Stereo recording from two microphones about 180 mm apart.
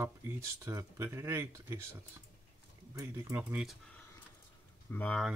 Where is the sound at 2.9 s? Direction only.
20° right (ahead or behind).